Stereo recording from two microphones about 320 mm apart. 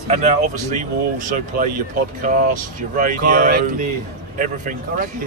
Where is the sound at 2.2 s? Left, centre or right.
Right.